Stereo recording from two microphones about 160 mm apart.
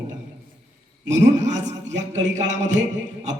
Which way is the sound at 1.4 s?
45° right (ahead or behind).